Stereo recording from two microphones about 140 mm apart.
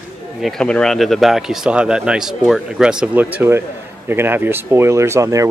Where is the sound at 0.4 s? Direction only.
5° left (ahead or behind).